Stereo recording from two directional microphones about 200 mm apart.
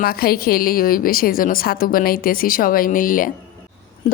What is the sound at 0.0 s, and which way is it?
A woman's voice, 50° left (ahead or behind).